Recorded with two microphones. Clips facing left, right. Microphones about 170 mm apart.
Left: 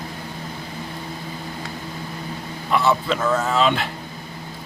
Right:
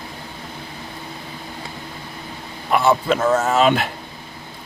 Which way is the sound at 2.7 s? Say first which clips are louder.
Right 3 dB; 50° right (ahead or behind).